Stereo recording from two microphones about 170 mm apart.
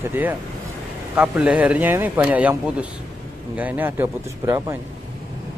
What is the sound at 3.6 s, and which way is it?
Speech, 10° right (ahead or behind).